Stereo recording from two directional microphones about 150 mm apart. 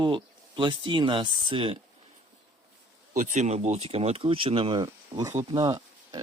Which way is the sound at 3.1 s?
55° right (ahead or behind).